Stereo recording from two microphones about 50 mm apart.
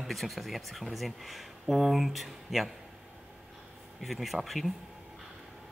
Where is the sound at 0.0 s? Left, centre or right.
Centre.